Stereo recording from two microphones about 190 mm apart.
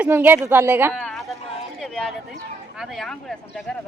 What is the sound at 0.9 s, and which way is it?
Speech, centre (ahead or behind).